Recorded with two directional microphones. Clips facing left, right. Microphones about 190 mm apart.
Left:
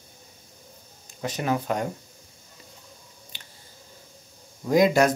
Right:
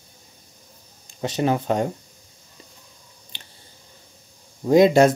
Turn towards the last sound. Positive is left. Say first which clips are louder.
# right 5 dB
turn(degrees=-25)  # may be behind; listen again after turning